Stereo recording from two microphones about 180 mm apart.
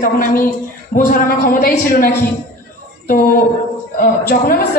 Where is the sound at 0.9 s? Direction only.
50° left (ahead or behind).